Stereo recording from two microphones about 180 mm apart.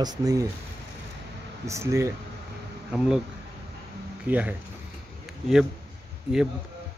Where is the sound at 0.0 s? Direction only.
20° right (ahead or behind).